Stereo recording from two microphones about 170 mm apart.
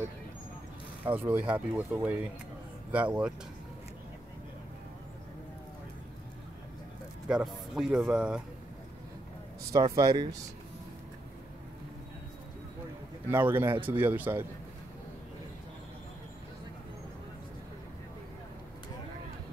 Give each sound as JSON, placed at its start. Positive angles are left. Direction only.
{"t": 1.0, "sound": "speech", "side_deg": -10}
{"t": 7.2, "sound": "speech", "side_deg": -5}
{"t": 9.7, "sound": "speech", "side_deg": -25}
{"t": 13.3, "sound": "speech", "side_deg": -15}